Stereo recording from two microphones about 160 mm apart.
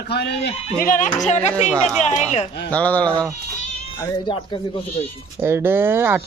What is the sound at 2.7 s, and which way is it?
Speech, 10° left (ahead or behind).